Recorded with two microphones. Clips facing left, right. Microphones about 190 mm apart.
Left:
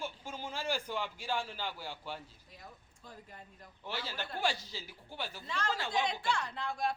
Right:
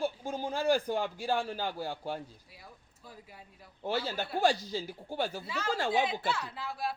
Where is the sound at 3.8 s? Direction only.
40° right (ahead or behind).